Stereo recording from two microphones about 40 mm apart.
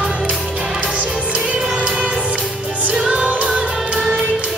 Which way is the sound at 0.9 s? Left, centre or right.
Right.